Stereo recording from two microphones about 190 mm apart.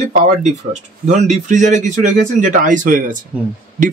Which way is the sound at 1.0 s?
40° right (ahead or behind).